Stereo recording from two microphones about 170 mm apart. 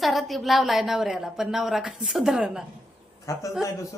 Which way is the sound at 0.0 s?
Centre (ahead or behind).